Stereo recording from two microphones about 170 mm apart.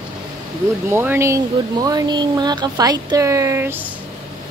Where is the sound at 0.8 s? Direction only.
15° right (ahead or behind).